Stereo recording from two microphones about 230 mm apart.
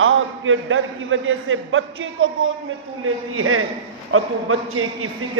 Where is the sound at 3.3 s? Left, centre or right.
Right.